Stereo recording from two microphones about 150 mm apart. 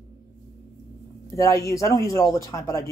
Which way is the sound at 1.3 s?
20° left (ahead or behind).